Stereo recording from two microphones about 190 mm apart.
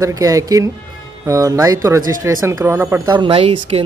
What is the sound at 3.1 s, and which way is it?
Speech, 25° right (ahead or behind).